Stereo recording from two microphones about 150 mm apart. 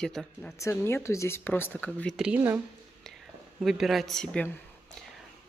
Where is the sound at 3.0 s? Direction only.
Centre (ahead or behind).